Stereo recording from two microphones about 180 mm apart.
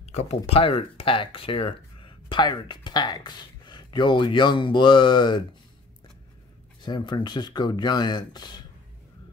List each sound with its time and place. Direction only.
0.0 s speech: 35° left (ahead or behind)
6.8 s speech: 25° left (ahead or behind)